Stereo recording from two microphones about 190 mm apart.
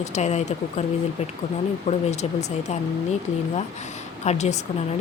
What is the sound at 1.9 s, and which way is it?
Speech, 35° left (ahead or behind).